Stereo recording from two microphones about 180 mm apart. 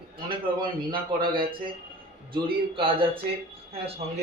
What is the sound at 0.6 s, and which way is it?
A man's voice, 25° right (ahead or behind).